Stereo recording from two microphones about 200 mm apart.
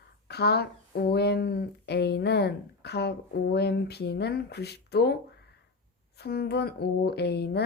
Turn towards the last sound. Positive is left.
turn(degrees=55)  # may be behind; listen again after turning